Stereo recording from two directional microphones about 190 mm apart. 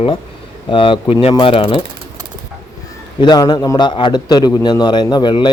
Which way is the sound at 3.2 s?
20° left (ahead or behind).